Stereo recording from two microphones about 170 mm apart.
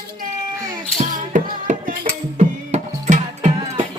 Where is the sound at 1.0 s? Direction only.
50° right (ahead or behind).